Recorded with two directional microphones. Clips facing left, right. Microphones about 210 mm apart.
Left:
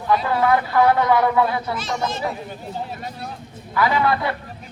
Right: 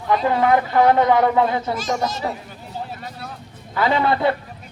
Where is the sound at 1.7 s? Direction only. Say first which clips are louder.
Right 2 dB; 45° right (ahead or behind).